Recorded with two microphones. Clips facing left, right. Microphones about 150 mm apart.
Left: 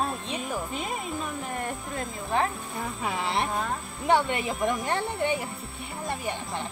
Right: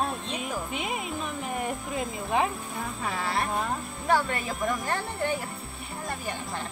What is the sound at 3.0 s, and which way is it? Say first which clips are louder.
Speech: left 1 dB; 20° left (ahead or behind).